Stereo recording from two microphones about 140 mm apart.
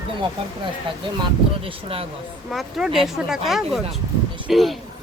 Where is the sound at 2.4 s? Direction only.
Centre (ahead or behind).